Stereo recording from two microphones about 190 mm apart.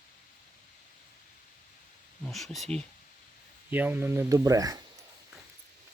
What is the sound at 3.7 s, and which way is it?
Speech, 10° right (ahead or behind).